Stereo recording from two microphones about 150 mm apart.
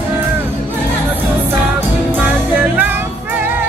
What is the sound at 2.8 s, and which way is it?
Music, 15° right (ahead or behind).